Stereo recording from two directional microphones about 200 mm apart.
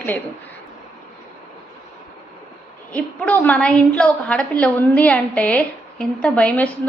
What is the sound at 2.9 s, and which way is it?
A woman's voice, 5° left (ahead or behind).